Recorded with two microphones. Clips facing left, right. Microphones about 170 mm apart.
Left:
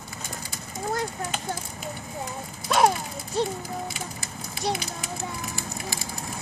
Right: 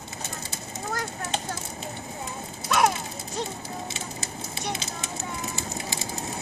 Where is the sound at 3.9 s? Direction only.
25° right (ahead or behind).